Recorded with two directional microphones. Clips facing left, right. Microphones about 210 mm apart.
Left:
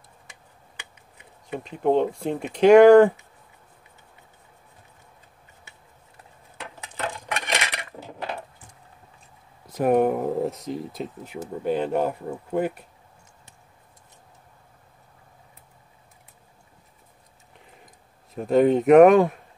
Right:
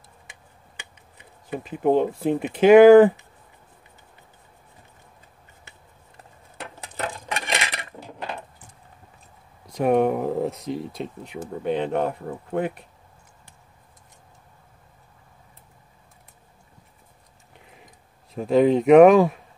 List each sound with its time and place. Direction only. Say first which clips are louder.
1.5 s speech: right 1 dB; 5° right (ahead or behind)
6.6 s a sound: right 1 dB; 35° right (ahead or behind)
9.7 s speech: even; 5° left (ahead or behind)
18.3 s speech: right 1 dB; centre (ahead or behind)